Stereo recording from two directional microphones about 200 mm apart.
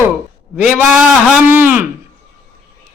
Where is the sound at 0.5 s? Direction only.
5° right (ahead or behind).